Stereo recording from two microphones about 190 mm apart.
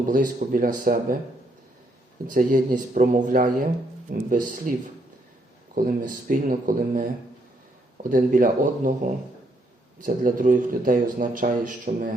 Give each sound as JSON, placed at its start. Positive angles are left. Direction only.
{"t": 0.1, "sound": "a man's voice", "side_deg": -45}
{"t": 2.3, "sound": "a man's voice", "side_deg": -45}
{"t": 5.7, "sound": "a man's voice", "side_deg": -45}
{"t": 8.1, "sound": "a man's voice", "side_deg": -45}
{"t": 10.0, "sound": "a man's voice", "side_deg": -45}